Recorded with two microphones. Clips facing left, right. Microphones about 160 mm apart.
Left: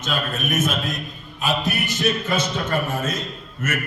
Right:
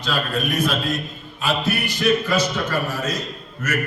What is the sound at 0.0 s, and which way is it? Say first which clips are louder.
A man's voice: right 2 dB; 20° left (ahead or behind).